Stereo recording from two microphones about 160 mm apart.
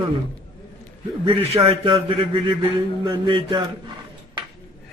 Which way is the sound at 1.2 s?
35° right (ahead or behind).